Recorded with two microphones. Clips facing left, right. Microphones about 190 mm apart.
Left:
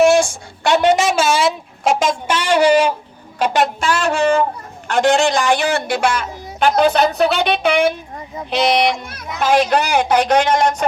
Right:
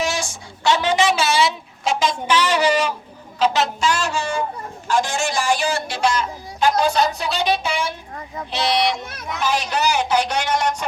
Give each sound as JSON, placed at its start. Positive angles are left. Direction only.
{"t": 0.0, "sound": "a sound", "side_deg": 55}
{"t": 3.3, "sound": "speech", "side_deg": 55}
{"t": 9.4, "sound": "speech", "side_deg": 55}